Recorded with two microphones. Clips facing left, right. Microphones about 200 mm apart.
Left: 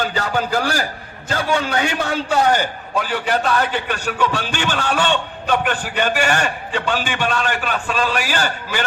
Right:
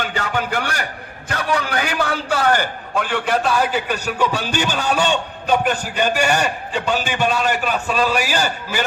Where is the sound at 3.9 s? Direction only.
40° right (ahead or behind).